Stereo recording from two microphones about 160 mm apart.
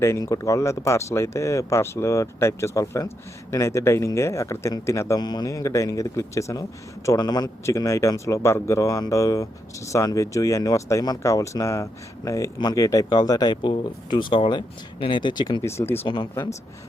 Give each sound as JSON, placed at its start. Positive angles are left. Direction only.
{"t": 0.0, "sound": "speech", "side_deg": 20}
{"t": 16.0, "sound": "speech", "side_deg": 30}